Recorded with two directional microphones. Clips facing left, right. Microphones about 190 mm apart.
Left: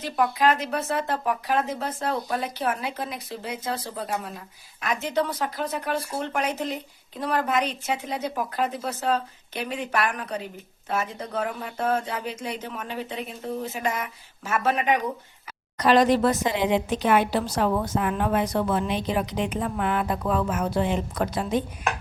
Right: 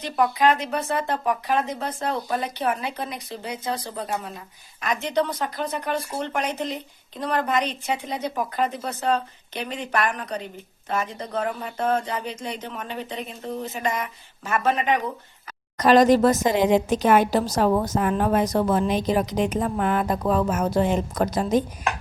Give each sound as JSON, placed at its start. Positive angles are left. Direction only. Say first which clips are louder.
{"t": 0.0, "sound": "speech", "louder": "right 2 dB", "side_deg": 0}
{"t": 15.8, "sound": "a woman's voice", "louder": "right 3 dB", "side_deg": -45}